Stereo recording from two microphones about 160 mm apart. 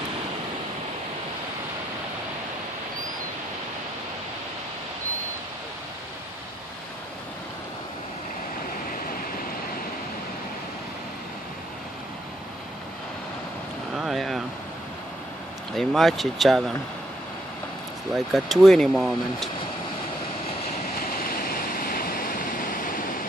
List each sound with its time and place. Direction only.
13.9 s a sound: centre (ahead or behind)
15.7 s speech: centre (ahead or behind)
18.1 s speech: centre (ahead or behind)
21.0 s waterfall: 65° left (ahead or behind)